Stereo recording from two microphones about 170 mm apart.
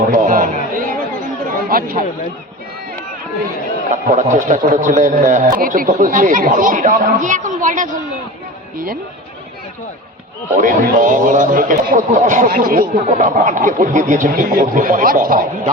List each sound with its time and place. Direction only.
0.1 s a sound: 55° right (ahead or behind)
1.5 s chatter: 55° right (ahead or behind)
3.9 s a man's voice: 50° right (ahead or behind)
10.5 s a man's voice: 50° right (ahead or behind)